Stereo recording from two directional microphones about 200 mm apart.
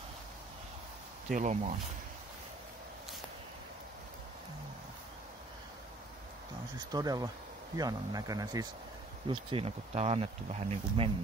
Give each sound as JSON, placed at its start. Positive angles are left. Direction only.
{"t": 1.3, "sound": "speech", "side_deg": -35}
{"t": 6.9, "sound": "speech", "side_deg": -20}